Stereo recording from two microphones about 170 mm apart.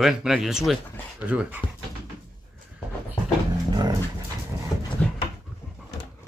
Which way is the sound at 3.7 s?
25° right (ahead or behind).